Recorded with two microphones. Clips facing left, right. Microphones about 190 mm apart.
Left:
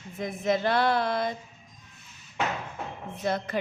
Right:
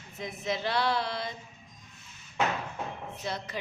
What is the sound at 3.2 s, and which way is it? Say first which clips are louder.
Female singing: left 9 dB; 50° left (ahead or behind).